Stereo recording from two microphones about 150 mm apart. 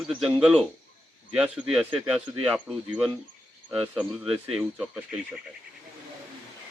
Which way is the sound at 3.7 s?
10° right (ahead or behind).